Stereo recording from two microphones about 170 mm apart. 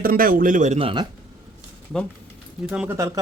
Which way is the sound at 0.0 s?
60° right (ahead or behind).